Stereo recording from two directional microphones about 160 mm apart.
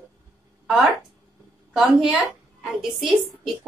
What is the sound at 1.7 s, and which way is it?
A woman's voice, 5° right (ahead or behind).